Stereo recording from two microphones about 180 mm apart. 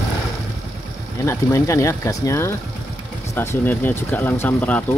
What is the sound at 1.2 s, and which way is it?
Speech, 15° left (ahead or behind).